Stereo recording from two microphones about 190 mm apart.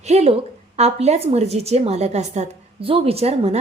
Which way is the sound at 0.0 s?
35° right (ahead or behind).